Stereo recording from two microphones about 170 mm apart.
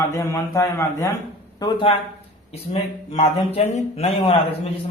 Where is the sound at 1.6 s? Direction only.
30° left (ahead or behind).